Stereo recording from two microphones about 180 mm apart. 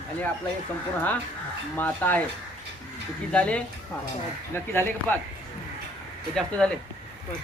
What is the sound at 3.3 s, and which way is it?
Speech, 5° left (ahead or behind).